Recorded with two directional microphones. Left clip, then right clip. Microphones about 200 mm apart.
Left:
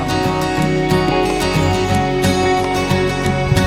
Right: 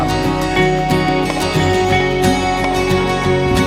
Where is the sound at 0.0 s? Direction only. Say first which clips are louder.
Right 1 dB; centre (ahead or behind).